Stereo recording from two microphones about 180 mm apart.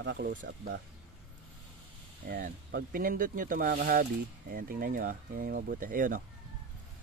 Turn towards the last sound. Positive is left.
turn(degrees=-50)  # may be behind; listen again after turning